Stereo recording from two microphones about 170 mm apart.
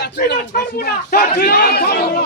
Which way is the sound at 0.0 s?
70° left (ahead or behind).